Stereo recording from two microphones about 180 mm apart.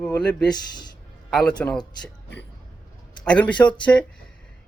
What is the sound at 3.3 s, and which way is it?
Speech, 5° left (ahead or behind).